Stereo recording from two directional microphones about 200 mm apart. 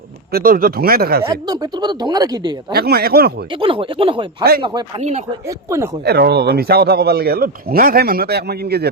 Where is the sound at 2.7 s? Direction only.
50° right (ahead or behind).